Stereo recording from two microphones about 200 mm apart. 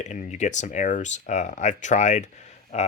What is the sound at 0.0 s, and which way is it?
Speech, 35° left (ahead or behind).